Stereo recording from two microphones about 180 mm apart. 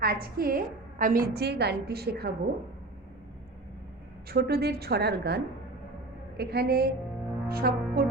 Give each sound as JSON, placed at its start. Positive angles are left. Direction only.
{"t": 0.0, "sound": "a woman's voice", "side_deg": -55}
{"t": 4.3, "sound": "a woman's voice", "side_deg": -60}